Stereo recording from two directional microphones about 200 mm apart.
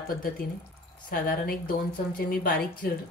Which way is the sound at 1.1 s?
45° left (ahead or behind).